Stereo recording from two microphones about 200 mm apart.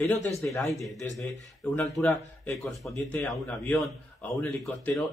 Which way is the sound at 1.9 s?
10° left (ahead or behind).